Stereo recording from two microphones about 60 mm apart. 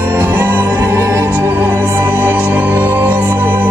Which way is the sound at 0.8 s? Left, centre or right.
Right.